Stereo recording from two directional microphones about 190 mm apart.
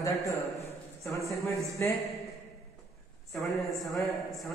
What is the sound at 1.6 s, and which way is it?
Speech, 15° left (ahead or behind).